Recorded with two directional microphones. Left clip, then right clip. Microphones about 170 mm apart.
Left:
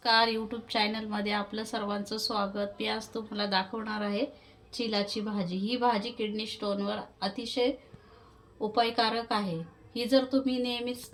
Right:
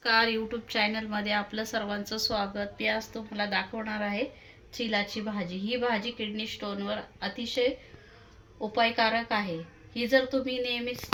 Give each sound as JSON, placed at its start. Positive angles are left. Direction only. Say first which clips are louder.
{"t": 0.0, "sound": "a woman's voice", "louder": "even", "side_deg": 75}
{"t": 4.9, "sound": "a woman's voice", "louder": "right 2 dB", "side_deg": 90}
{"t": 8.7, "sound": "a woman's voice", "louder": "right 2 dB", "side_deg": 90}